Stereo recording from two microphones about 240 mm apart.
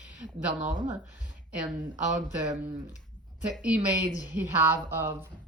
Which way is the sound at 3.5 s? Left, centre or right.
Centre.